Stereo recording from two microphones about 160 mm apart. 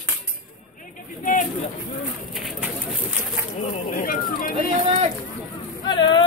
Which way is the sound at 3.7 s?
60° left (ahead or behind).